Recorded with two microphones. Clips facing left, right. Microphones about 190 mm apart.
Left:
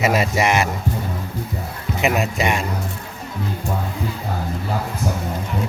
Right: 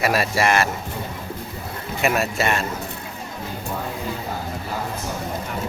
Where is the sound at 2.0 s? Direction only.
20° left (ahead or behind).